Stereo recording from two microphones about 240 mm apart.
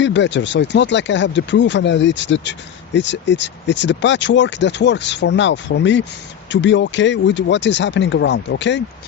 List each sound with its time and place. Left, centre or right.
0.0 s speech: left